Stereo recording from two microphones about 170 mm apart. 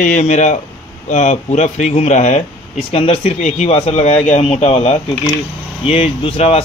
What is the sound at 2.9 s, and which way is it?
Speech, 35° left (ahead or behind).